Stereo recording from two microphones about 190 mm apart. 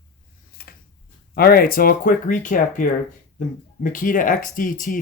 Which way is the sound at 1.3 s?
50° left (ahead or behind).